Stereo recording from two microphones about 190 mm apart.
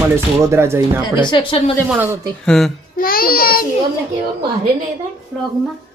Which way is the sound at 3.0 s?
50° left (ahead or behind).